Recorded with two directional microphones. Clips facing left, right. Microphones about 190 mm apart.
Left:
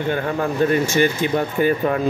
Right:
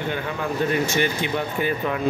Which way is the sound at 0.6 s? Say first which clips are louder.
Left 5 dB; 45° left (ahead or behind).